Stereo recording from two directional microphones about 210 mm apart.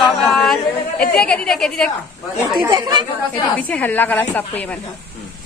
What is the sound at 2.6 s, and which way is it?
Speech, 20° right (ahead or behind).